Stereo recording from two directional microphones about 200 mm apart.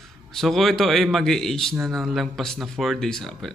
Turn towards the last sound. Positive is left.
turn(degrees=0)  # may be behind; listen again after turning